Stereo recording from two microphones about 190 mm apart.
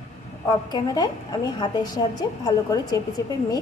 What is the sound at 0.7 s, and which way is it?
A woman's voice, 20° left (ahead or behind).